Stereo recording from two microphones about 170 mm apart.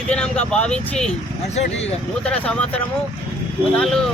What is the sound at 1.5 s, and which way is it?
Speech, 40° left (ahead or behind).